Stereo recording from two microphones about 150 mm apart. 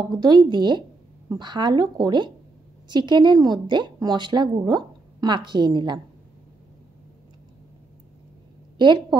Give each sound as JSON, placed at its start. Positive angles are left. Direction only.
{"t": 0.2, "sound": "a woman's voice", "side_deg": -30}
{"t": 8.7, "sound": "a woman's voice", "side_deg": -30}